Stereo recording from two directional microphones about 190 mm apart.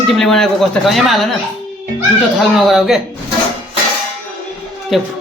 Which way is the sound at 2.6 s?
Centre (ahead or behind).